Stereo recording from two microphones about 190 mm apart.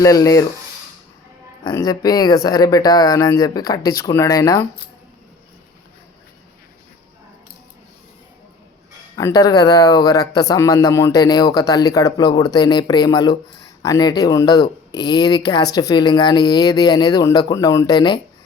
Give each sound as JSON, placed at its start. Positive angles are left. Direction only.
{"t": 0.0, "sound": "speech", "side_deg": 20}
{"t": 1.6, "sound": "speech", "side_deg": 20}
{"t": 9.1, "sound": "speech", "side_deg": 20}